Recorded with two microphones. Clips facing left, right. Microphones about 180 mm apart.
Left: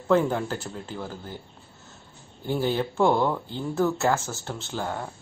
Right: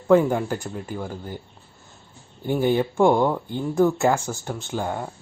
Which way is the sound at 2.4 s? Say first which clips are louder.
Right 5 dB; 15° right (ahead or behind).